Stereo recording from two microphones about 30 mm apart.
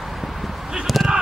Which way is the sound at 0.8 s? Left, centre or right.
Centre.